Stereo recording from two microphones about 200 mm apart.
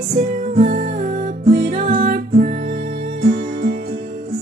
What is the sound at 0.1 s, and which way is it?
Music, 40° right (ahead or behind).